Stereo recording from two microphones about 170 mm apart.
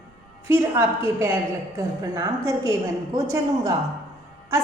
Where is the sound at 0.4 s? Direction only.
15° right (ahead or behind).